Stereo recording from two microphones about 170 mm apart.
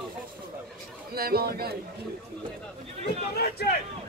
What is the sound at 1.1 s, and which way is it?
Speech, 65° right (ahead or behind).